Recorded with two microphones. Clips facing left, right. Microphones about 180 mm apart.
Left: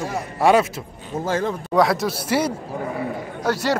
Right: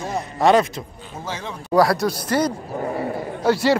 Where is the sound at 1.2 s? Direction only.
50° left (ahead or behind).